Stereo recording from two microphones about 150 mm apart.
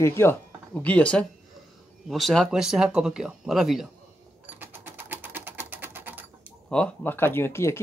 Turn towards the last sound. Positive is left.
turn(degrees=15)  # may be behind; listen again after turning